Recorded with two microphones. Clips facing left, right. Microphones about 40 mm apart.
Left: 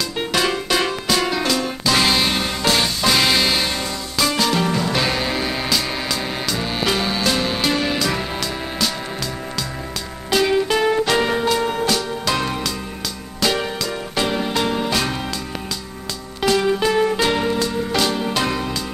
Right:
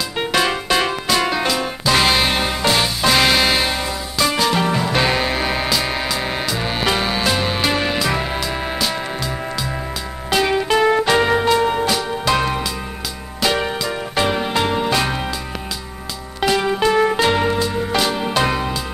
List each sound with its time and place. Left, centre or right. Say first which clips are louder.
0.2 s music: right 2 dB; centre
10.3 s music: right 1 dB; centre
16.3 s music: even; centre